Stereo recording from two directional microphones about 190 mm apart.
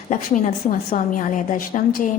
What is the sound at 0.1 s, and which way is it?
A woman's voice, 40° left (ahead or behind).